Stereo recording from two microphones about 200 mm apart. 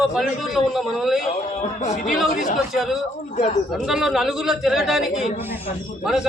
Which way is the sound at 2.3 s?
40° left (ahead or behind).